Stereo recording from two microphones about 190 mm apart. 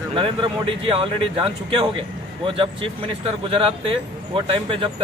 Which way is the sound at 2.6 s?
30° right (ahead or behind).